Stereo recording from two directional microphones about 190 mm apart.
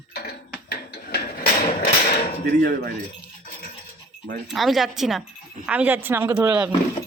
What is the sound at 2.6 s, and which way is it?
Speech, 50° right (ahead or behind).